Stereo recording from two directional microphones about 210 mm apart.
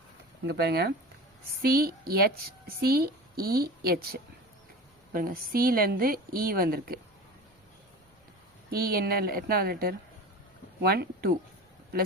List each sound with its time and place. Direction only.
0.4 s a woman's voice: 50° right (ahead or behind)
8.7 s a woman's voice: 45° right (ahead or behind)